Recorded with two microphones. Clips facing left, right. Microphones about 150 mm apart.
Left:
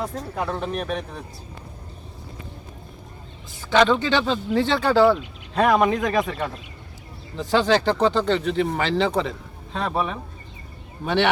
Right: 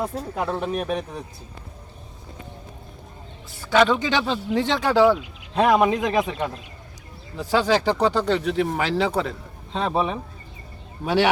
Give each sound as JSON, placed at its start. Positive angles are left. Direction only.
{"t": 0.0, "sound": "speech", "side_deg": -5}
{"t": 3.7, "sound": "speech", "side_deg": -5}
{"t": 4.9, "sound": "speech", "side_deg": 0}
{"t": 9.7, "sound": "speech", "side_deg": -20}
{"t": 11.0, "sound": "speech", "side_deg": -5}